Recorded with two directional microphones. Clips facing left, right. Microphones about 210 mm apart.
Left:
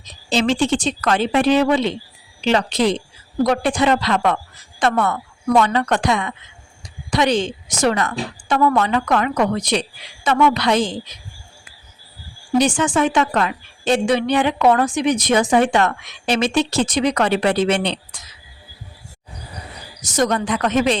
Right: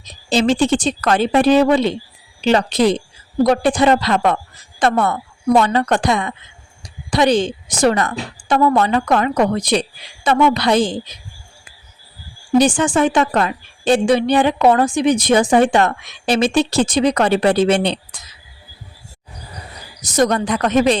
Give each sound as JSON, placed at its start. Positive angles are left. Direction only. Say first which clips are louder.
{"t": 0.3, "sound": "a woman's voice", "louder": "right 3 dB", "side_deg": -35}
{"t": 12.5, "sound": "a woman's voice", "louder": "right 3 dB", "side_deg": -30}
{"t": 20.0, "sound": "a woman's voice", "louder": "right 3 dB", "side_deg": -35}